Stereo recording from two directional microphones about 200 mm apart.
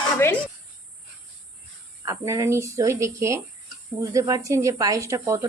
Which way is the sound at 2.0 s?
15° right (ahead or behind).